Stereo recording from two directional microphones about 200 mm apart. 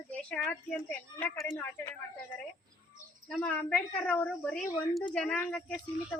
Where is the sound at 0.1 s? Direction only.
5° left (ahead or behind).